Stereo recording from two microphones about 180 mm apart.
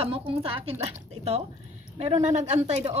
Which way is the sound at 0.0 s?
30° right (ahead or behind).